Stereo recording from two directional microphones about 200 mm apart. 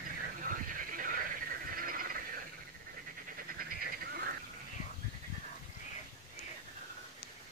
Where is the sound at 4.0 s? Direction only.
45° right (ahead or behind).